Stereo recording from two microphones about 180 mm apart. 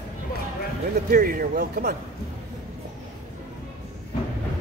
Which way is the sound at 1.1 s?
55° right (ahead or behind).